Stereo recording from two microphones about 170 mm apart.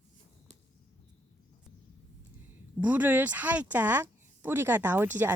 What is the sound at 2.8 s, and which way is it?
Speech, 10° right (ahead or behind).